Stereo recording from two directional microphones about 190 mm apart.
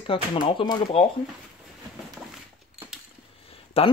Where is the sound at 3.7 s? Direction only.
30° left (ahead or behind).